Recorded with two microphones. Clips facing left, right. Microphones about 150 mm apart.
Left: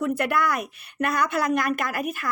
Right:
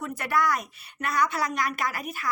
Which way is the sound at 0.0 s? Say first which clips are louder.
Left 3 dB; 60° left (ahead or behind).